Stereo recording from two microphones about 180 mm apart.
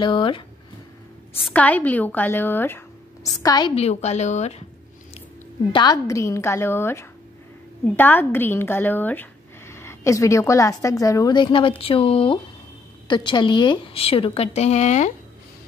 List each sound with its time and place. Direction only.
0.0 s speech: 25° left (ahead or behind)
1.4 s speech: 10° left (ahead or behind)
3.4 s speech: 20° left (ahead or behind)
3.7 s speech: 35° left (ahead or behind)
5.7 s speech: 25° left (ahead or behind)